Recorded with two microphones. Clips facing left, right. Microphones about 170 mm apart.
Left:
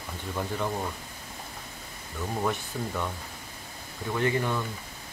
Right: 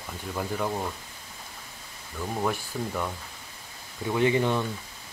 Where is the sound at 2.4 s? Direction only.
5° right (ahead or behind).